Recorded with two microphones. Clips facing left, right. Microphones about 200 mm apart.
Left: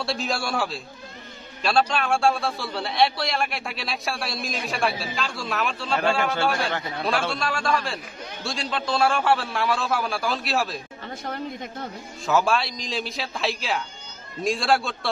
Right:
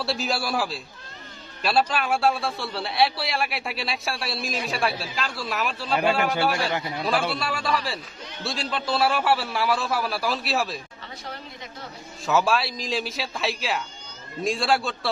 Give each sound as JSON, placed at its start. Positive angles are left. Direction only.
{"t": 0.0, "sound": "a man's voice", "side_deg": 0}
{"t": 11.3, "sound": "speech", "side_deg": 50}
{"t": 12.2, "sound": "a man's voice", "side_deg": 0}